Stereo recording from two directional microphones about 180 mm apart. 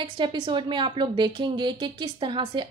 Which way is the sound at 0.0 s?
25° right (ahead or behind).